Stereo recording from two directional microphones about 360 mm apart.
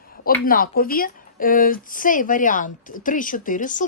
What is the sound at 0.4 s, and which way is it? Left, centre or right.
Speech, left.